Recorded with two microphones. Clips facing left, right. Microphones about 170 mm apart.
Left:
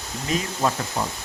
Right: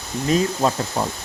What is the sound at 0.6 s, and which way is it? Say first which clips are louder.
Speech: right 3 dB; 25° right (ahead or behind).